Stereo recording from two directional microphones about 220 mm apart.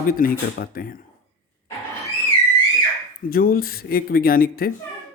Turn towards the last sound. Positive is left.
turn(degrees=40)  # may be behind; listen again after turning